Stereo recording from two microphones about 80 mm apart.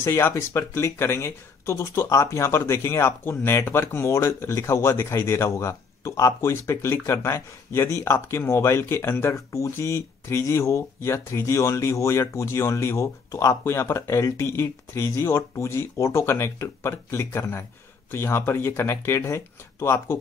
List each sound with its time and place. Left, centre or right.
0.0 s speech: left
9.3 s speech: left